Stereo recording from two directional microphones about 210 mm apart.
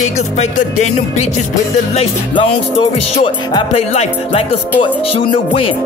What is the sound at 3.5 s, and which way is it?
Music, 30° left (ahead or behind).